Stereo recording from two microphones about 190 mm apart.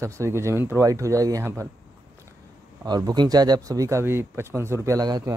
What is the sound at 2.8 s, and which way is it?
Speech, 20° right (ahead or behind).